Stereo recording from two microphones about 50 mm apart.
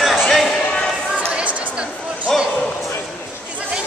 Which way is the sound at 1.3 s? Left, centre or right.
Right.